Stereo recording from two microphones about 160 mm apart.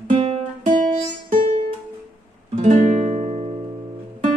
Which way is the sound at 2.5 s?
50° right (ahead or behind).